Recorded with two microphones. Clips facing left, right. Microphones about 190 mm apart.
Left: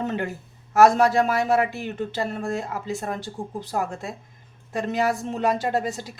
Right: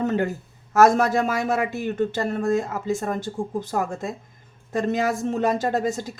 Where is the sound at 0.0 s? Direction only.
45° right (ahead or behind).